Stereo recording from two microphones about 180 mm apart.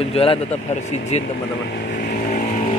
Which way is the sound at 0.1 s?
30° left (ahead or behind).